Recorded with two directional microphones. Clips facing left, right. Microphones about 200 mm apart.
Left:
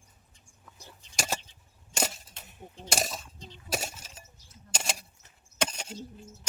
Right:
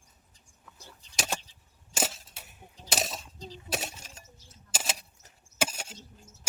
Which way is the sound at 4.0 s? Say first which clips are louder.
Even; centre (ahead or behind).